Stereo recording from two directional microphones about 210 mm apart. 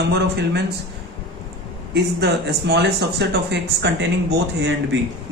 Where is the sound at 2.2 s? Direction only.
55° right (ahead or behind).